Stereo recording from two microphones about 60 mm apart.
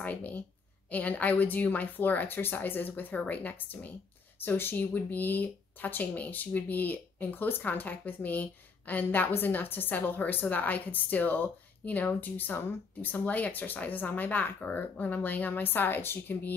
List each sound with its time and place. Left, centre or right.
0.0 s speech: left